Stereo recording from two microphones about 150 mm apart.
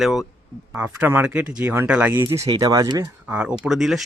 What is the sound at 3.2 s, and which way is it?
Speech, 10° right (ahead or behind).